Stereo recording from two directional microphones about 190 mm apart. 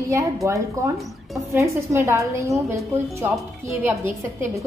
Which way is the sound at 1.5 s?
15° right (ahead or behind).